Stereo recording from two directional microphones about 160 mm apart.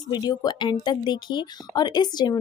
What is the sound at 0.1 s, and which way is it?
A woman's voice, 25° left (ahead or behind).